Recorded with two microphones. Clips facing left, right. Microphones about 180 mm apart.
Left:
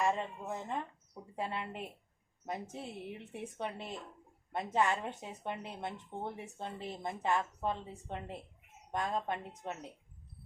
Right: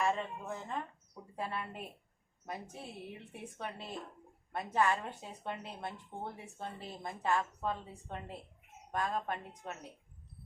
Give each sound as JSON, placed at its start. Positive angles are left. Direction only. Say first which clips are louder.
{"t": 0.0, "sound": "a woman's voice", "louder": "left 1 dB", "side_deg": 20}